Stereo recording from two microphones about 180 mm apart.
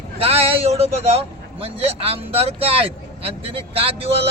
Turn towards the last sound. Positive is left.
turn(degrees=-30)  # may be behind; listen again after turning